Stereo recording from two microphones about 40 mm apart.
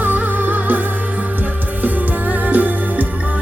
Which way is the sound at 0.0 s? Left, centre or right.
Right.